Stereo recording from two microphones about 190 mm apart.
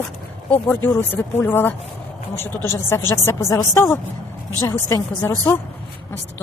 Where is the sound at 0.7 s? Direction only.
10° left (ahead or behind).